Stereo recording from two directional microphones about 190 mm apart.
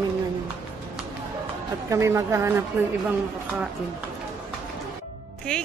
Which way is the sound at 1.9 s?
15° right (ahead or behind).